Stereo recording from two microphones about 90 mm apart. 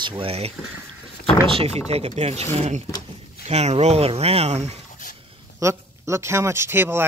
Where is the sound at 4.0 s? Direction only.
90° right.